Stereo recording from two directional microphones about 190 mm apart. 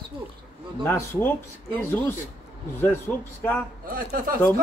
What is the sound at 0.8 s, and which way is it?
Speech, 10° left (ahead or behind).